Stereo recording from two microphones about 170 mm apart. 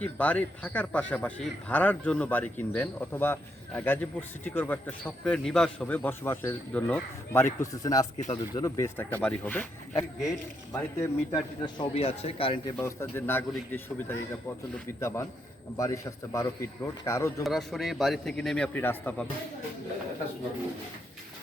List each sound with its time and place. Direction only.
0.0 s speech: 10° left (ahead or behind)
9.9 s speech: 20° left (ahead or behind)
11.6 s speech: 30° left (ahead or behind)
12.8 s speech: 15° left (ahead or behind)
17.4 s a man's voice: centre (ahead or behind)